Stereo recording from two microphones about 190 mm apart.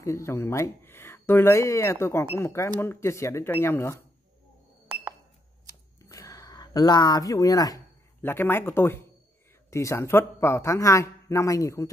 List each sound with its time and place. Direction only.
0.0 s speech: 15° left (ahead or behind)
5.9 s a sound: 15° left (ahead or behind)
9.7 s speech: 15° left (ahead or behind)